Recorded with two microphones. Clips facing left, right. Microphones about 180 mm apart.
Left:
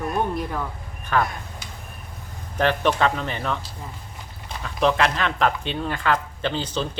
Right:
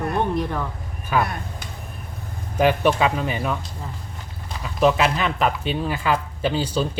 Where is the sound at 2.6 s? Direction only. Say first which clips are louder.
Right 2 dB; 10° right (ahead or behind).